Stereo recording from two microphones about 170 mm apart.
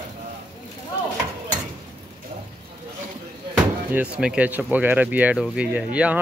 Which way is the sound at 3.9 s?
5° right (ahead or behind).